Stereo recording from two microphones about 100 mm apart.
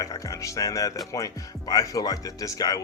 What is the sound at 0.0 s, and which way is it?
A man's voice, 35° left (ahead or behind).